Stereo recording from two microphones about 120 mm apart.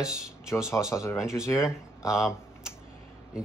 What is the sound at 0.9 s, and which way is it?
Speech, 25° left (ahead or behind).